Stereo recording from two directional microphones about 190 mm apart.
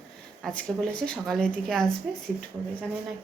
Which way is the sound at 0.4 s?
5° left (ahead or behind).